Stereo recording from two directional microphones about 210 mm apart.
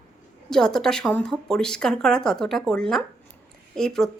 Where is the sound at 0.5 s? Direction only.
5° left (ahead or behind).